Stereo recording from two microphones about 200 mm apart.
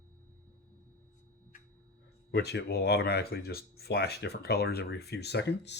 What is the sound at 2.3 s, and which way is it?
Speech, 55° left (ahead or behind).